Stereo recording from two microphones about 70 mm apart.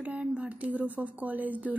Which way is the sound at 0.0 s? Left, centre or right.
Centre.